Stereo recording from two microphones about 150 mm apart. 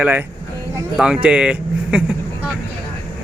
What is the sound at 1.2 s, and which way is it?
Speech, 5° right (ahead or behind).